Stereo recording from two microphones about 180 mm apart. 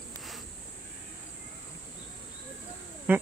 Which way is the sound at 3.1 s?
10° right (ahead or behind).